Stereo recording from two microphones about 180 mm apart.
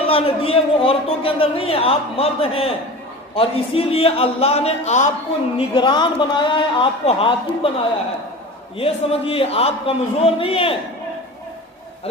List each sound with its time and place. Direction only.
0.0 s a man's voice: 30° left (ahead or behind)
5.5 s a man's voice: 25° left (ahead or behind)
8.8 s a man's voice: 30° left (ahead or behind)